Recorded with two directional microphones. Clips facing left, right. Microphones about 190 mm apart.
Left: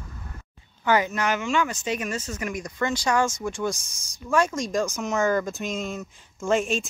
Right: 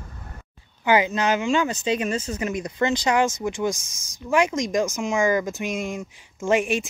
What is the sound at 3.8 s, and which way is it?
Speech, 90° right.